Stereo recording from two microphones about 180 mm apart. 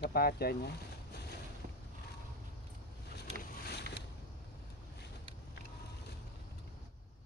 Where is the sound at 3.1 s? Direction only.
65° left (ahead or behind).